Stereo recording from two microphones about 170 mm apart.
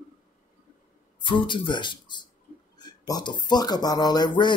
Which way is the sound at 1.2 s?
30° left (ahead or behind).